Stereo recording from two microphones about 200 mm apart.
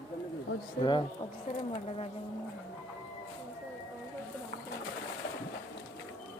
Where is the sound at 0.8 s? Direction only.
25° left (ahead or behind).